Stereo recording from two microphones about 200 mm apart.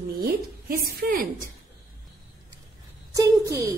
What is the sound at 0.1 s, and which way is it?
A woman's voice, 50° right (ahead or behind).